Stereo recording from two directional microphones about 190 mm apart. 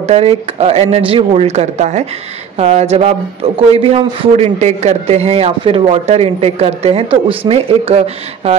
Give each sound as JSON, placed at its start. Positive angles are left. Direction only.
{"t": 0.0, "sound": "speech", "side_deg": -30}